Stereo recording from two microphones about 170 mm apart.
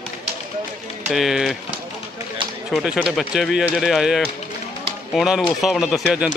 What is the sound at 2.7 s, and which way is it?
Speech, 5° right (ahead or behind).